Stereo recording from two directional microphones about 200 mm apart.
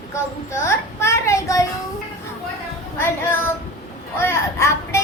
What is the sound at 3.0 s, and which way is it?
A child's voice, 10° left (ahead or behind).